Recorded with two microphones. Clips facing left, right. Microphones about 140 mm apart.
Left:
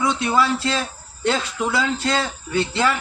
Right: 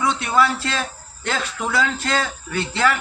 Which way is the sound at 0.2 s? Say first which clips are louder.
Even; 20° left (ahead or behind).